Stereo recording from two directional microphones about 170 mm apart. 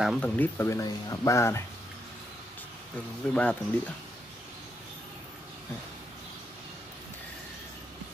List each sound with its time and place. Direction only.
0.0 s speech: centre (ahead or behind)
0.4 s speech: 15° left (ahead or behind)
3.3 s speech: 5° left (ahead or behind)